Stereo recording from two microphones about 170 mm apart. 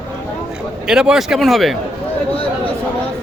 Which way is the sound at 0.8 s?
5° right (ahead or behind).